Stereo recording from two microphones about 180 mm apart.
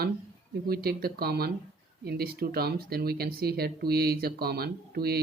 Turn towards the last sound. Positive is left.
turn(degrees=-60)  # may be behind; listen again after turning